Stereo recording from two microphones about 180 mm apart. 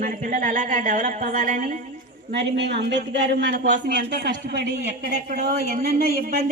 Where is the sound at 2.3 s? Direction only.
70° right (ahead or behind).